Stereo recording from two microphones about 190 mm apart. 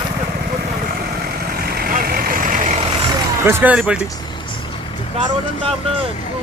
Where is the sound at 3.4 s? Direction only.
15° right (ahead or behind).